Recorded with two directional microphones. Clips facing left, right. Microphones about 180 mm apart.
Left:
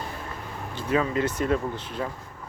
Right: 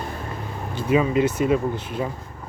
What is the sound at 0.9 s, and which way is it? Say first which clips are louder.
Speech: right 5 dB; 15° right (ahead or behind).